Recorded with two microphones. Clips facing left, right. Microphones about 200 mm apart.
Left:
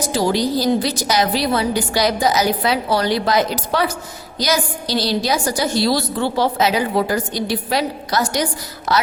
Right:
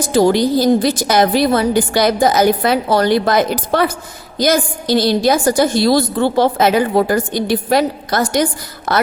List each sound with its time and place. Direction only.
0.1 s a woman's voice: 55° right (ahead or behind)